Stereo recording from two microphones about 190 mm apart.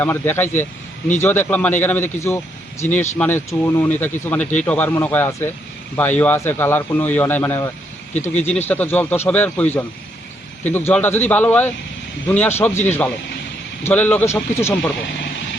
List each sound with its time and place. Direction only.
0.0 s a man's voice: 10° left (ahead or behind)
8.4 s speech: 35° left (ahead or behind)
8.6 s speech: 10° left (ahead or behind)